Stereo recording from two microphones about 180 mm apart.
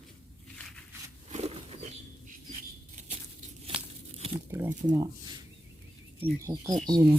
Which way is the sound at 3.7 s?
30° right (ahead or behind).